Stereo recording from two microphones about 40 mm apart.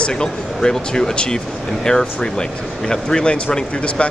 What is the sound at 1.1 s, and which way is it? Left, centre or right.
Speech, left.